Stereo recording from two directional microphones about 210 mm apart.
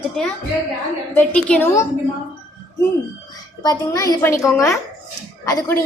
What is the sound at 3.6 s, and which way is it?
A child's voice, 20° left (ahead or behind).